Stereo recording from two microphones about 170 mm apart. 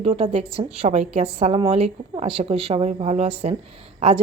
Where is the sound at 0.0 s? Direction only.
35° right (ahead or behind).